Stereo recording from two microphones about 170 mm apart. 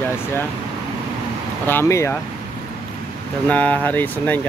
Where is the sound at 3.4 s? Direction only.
10° left (ahead or behind).